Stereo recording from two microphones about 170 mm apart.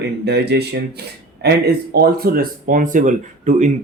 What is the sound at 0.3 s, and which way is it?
Speech, 75° right (ahead or behind).